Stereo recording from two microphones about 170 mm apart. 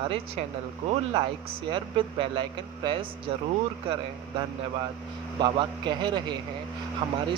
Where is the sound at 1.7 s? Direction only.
30° right (ahead or behind).